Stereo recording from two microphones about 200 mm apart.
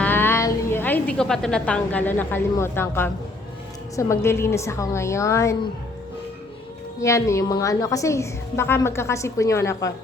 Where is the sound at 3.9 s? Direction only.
15° left (ahead or behind).